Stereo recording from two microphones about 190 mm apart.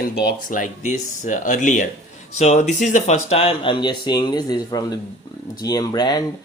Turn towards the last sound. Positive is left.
turn(degrees=20)  # may be behind; listen again after turning